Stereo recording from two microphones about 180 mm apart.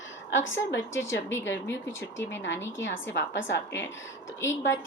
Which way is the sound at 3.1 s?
80° left.